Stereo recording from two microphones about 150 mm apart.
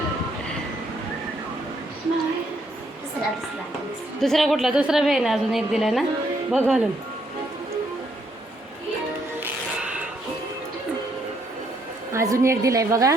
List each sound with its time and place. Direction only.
4.2 s a woman's voice: centre (ahead or behind)
9.4 s music: 10° right (ahead or behind)
12.1 s a woman's voice: 20° right (ahead or behind)